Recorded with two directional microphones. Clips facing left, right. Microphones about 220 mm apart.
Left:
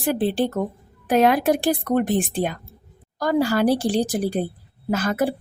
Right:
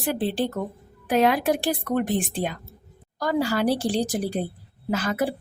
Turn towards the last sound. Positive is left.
turn(degrees=45)  # may be behind; listen again after turning